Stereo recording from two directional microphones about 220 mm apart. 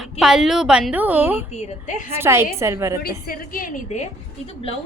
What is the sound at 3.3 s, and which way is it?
Speech, 40° left (ahead or behind).